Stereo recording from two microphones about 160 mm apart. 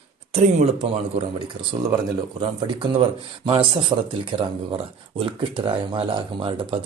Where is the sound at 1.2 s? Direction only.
30° right (ahead or behind).